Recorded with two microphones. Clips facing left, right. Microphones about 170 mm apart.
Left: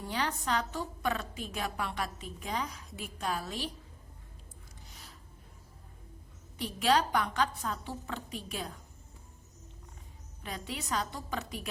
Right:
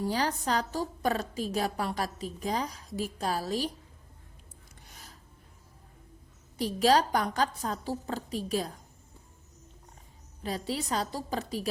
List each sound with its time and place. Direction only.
0.0 s a woman's voice: 35° right (ahead or behind)
6.6 s a woman's voice: 35° right (ahead or behind)
10.4 s a woman's voice: 35° right (ahead or behind)